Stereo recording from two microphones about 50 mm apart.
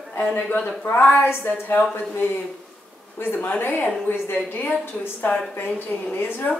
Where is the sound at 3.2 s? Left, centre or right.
Left.